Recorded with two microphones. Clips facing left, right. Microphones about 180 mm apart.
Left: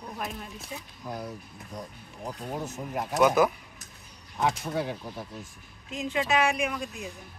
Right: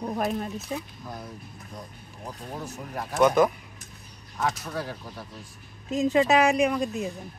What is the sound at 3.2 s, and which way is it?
Speech, 5° left (ahead or behind).